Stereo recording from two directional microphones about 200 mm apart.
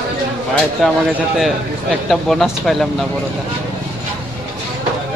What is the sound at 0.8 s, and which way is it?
Speech, centre (ahead or behind).